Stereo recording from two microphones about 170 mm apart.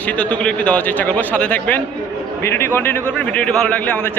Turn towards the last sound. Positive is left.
turn(degrees=10)  # may be behind; listen again after turning